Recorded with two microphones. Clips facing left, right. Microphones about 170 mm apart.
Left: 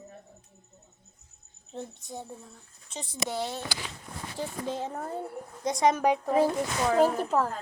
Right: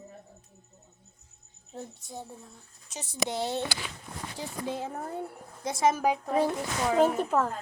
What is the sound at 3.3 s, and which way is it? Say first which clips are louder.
Speech: right 1 dB; 25° right (ahead or behind).